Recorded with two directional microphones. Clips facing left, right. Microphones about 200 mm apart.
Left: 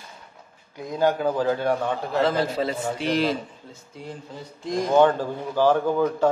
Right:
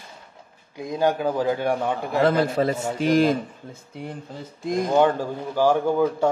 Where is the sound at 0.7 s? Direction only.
15° right (ahead or behind).